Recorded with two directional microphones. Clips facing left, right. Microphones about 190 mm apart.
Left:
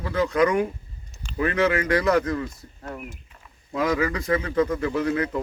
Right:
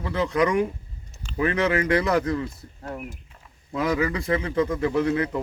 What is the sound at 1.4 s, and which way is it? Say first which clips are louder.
Speech: even; 25° right (ahead or behind).